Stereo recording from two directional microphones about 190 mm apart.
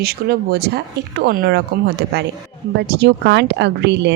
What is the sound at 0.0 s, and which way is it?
Speech, 55° right (ahead or behind).